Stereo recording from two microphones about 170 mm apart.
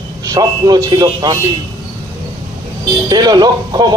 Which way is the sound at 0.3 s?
20° right (ahead or behind).